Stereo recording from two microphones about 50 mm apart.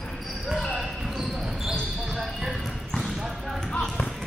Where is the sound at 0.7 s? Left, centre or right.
Centre.